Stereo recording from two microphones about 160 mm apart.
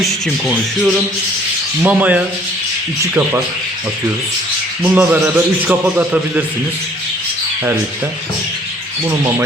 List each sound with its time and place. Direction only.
0.0 s a man's voice: centre (ahead or behind); by 3.4 s 15° right (ahead or behind)
4.8 s a man's voice: 10° right (ahead or behind)